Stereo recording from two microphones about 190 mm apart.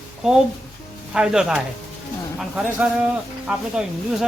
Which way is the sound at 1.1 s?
5° right (ahead or behind).